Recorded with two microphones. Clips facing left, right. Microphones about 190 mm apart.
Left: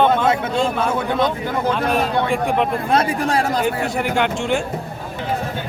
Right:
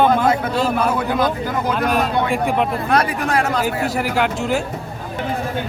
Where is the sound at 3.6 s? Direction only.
Centre (ahead or behind).